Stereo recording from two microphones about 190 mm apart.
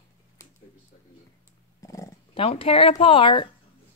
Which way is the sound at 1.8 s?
15° left (ahead or behind).